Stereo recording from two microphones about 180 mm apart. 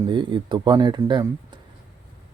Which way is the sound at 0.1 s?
25° right (ahead or behind).